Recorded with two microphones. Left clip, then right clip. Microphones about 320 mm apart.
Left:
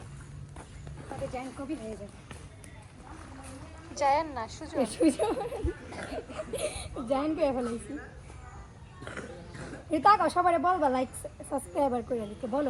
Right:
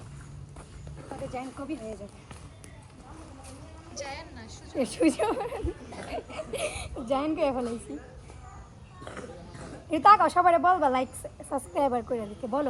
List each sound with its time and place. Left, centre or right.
1.3 s speech: centre
3.9 s speech: centre
9.0 s a sound: right
9.9 s speech: centre